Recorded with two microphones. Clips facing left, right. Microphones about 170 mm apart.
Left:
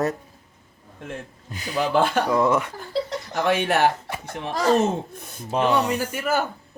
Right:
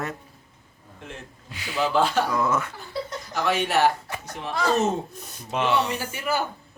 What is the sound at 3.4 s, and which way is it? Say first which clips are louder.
Speech: left 2 dB; 55° left (ahead or behind).